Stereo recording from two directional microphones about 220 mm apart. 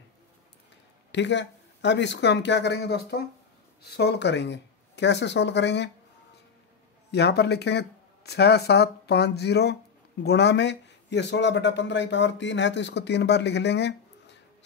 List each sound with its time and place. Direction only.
1.1 s speech: 55° left (ahead or behind)
7.1 s speech: 50° left (ahead or behind)